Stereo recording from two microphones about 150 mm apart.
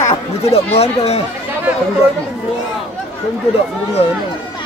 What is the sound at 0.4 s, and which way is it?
Speech, 45° left (ahead or behind).